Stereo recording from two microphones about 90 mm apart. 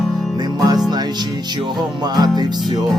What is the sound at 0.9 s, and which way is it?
Speech, 50° right (ahead or behind).